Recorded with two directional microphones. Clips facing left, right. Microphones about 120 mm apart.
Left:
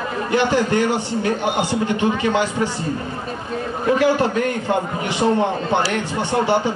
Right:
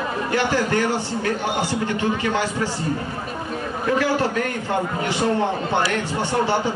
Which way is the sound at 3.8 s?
20° left (ahead or behind).